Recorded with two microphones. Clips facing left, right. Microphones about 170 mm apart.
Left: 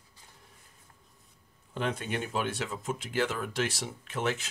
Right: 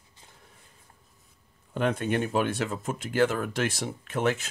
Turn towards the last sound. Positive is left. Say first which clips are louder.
# right 5 dB
turn(degrees=-50)  # may be behind; listen again after turning